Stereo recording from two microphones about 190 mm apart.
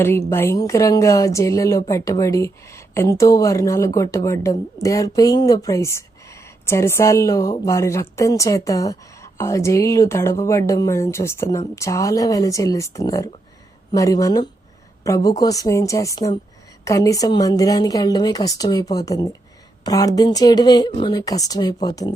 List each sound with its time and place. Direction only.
0.0 s a woman's voice: 15° left (ahead or behind)